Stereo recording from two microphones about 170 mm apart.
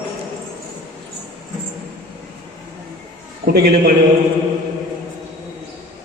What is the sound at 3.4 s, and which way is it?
Speech, 60° right (ahead or behind).